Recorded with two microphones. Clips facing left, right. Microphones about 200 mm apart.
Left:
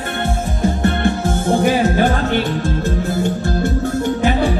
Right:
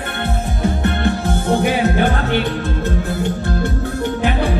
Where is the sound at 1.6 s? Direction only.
60° right (ahead or behind).